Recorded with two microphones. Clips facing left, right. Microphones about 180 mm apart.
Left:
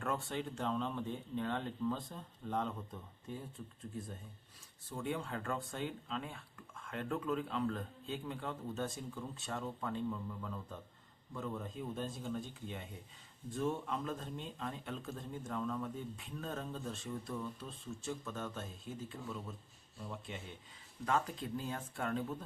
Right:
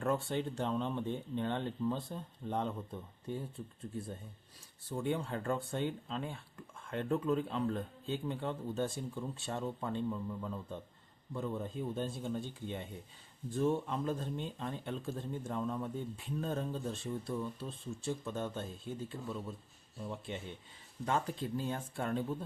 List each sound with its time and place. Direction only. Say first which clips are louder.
0.0 s speech: right 5 dB; 30° right (ahead or behind)
4.9 s a man's voice: right 4 dB; 30° right (ahead or behind)